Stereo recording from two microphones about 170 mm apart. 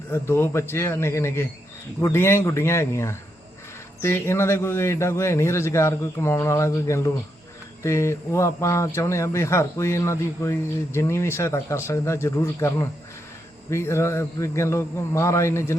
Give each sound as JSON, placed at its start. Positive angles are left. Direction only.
{"t": 0.1, "sound": "a man's voice", "side_deg": 15}